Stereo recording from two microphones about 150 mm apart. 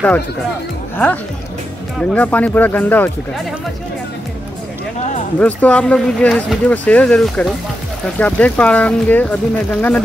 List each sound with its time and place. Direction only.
2.0 s speech: 10° left (ahead or behind)
5.4 s speech: 10° left (ahead or behind)